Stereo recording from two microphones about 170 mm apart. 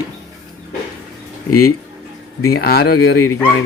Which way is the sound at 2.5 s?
65° left (ahead or behind).